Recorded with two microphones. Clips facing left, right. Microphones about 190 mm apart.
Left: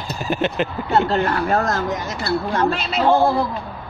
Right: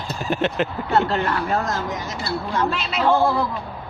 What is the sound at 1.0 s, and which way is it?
Speech, 35° left (ahead or behind).